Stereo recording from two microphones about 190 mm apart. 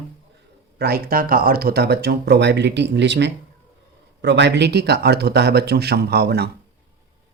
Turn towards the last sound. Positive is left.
turn(degrees=-55)  # may be behind; listen again after turning